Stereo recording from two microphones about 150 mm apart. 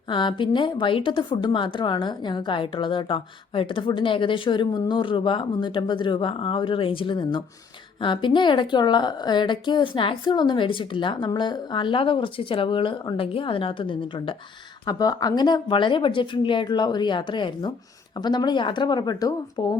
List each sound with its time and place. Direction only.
0.1 s a woman's voice: 30° left (ahead or behind)